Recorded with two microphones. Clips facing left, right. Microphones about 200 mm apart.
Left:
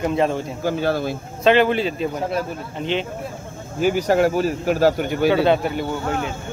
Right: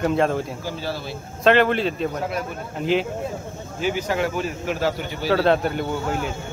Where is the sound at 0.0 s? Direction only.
Centre (ahead or behind).